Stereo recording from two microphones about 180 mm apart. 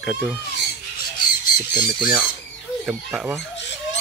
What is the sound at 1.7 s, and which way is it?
Speech, 10° right (ahead or behind).